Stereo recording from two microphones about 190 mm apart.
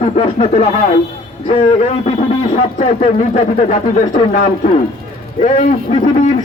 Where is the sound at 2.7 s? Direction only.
40° left (ahead or behind).